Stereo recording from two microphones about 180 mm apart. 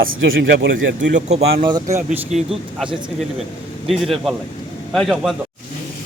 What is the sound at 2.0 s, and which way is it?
Speech, 5° right (ahead or behind).